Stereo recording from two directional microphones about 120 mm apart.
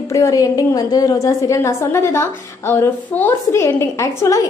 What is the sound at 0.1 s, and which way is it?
A woman's voice, 25° left (ahead or behind).